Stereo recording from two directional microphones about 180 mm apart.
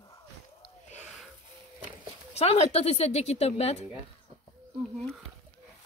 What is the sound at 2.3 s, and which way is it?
A woman's voice, 35° left (ahead or behind).